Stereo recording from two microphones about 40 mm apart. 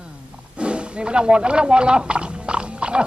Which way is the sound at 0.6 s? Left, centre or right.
Right.